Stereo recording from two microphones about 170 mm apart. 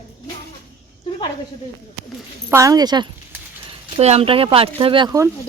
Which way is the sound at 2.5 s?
20° right (ahead or behind).